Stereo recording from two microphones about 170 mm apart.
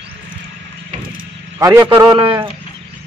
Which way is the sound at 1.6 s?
20° right (ahead or behind).